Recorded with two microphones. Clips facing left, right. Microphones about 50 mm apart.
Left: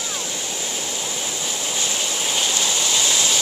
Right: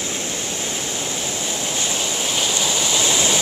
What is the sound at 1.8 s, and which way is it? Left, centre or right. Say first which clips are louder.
Waves: even; centre.